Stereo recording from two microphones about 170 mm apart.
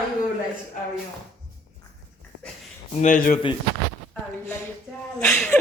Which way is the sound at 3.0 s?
50° left (ahead or behind).